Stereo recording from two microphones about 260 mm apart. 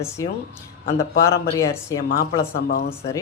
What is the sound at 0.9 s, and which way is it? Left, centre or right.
Speech, left.